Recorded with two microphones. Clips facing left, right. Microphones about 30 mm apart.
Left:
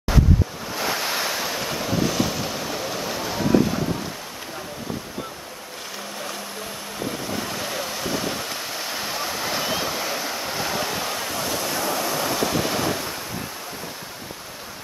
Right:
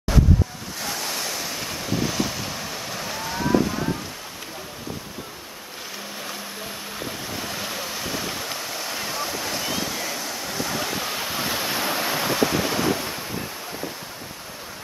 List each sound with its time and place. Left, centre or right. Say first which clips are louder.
0.7 s waves: left 5 dB; left
1.6 s waves: left 1 dB; centre
7.1 s waves: left 4 dB; centre; by 10.7 s left
10.7 s waves: even; centre
11.1 s waves: even; centre
11.4 s waves: even; right
12.3 s waves: right 1 dB; centre